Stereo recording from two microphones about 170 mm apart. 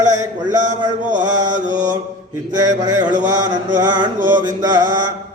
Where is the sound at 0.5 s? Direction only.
45° right (ahead or behind).